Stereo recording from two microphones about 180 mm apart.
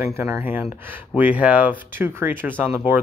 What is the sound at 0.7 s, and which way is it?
Speech, 10° right (ahead or behind).